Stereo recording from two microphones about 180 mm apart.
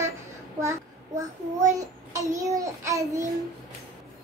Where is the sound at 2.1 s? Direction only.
20° right (ahead or behind).